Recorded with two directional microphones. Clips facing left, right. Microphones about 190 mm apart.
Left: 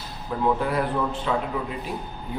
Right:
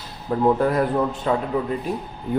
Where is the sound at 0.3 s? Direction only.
45° right (ahead or behind).